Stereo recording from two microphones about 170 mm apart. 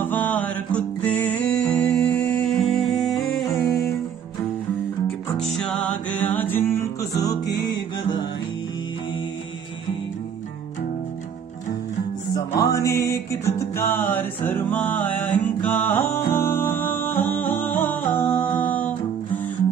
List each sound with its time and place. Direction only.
0.0 s music: 10° left (ahead or behind)
5.0 s music: 5° left (ahead or behind); by 7.7 s 20° left (ahead or behind)
12.4 s music: 20° left (ahead or behind)